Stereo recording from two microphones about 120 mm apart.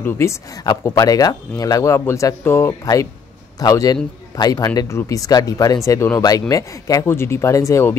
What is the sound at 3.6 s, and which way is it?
A man's voice, 30° left (ahead or behind).